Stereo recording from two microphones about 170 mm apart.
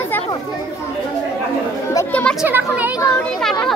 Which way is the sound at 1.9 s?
5° left (ahead or behind).